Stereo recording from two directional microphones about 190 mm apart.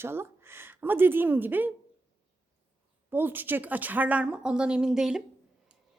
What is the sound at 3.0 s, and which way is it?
A woman's voice, 10° right (ahead or behind).